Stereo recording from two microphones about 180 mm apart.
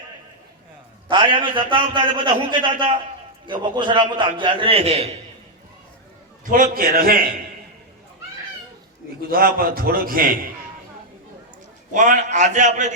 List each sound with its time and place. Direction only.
1.0 s a man's voice: 25° right (ahead or behind)
6.5 s a man's voice: 50° right (ahead or behind)
9.3 s a man's voice: 55° right (ahead or behind)
11.9 s a man's voice: 45° right (ahead or behind)